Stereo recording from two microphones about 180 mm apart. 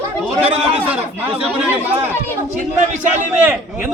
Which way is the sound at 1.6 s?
10° right (ahead or behind).